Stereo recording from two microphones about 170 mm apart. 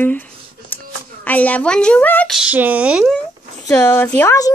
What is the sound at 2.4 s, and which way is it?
Speech, 10° right (ahead or behind).